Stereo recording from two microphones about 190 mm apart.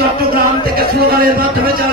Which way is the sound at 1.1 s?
50° right (ahead or behind).